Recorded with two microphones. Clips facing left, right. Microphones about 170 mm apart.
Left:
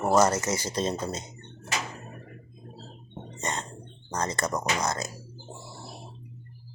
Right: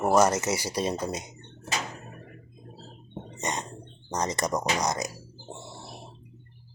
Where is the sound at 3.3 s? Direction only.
15° right (ahead or behind).